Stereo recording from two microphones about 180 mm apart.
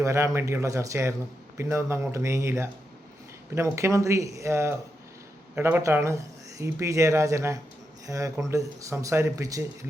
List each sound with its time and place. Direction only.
0.0 s speech: 15° right (ahead or behind)